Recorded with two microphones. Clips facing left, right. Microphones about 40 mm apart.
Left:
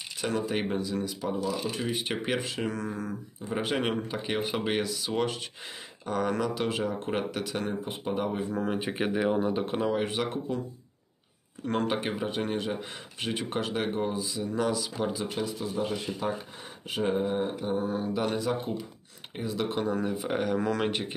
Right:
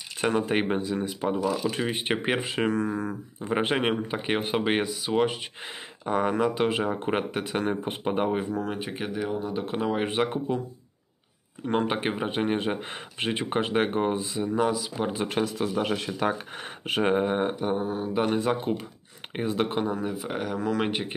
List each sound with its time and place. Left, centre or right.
0.2 s speech: right
8.5 s speech: centre
9.0 s speech: centre
9.5 s speech: centre
9.9 s speech: right
11.6 s speech: centre
15.1 s speech: right
17.7 s speech: centre
18.1 s speech: right
19.8 s speech: centre